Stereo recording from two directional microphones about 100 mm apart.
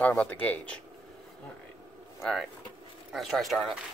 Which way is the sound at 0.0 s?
15° left (ahead or behind).